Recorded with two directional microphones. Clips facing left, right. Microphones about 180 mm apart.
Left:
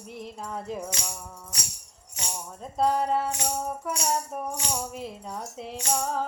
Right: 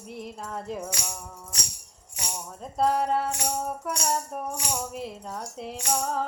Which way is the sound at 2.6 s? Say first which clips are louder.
Even; centre (ahead or behind).